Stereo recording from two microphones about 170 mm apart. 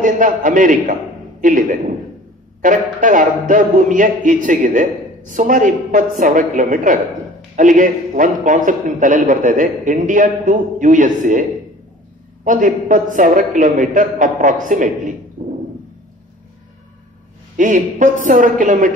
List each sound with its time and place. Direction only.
0.0 s a man's voice: 50° right (ahead or behind)
12.4 s a man's voice: 50° right (ahead or behind)
15.4 s a sound: 45° right (ahead or behind)
17.6 s a man's voice: 50° right (ahead or behind)